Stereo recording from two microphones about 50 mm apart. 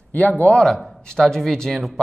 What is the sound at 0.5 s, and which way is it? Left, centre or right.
Speech, centre.